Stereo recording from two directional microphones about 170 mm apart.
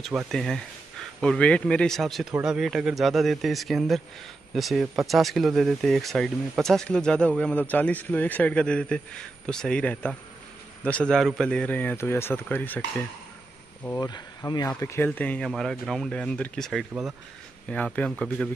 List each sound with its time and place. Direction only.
0.3 s speech: centre (ahead or behind)
13.8 s speech: 20° left (ahead or behind); by 18.5 s 5° left (ahead or behind)